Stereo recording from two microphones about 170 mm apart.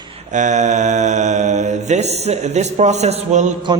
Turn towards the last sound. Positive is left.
turn(degrees=-45)  # may be behind; listen again after turning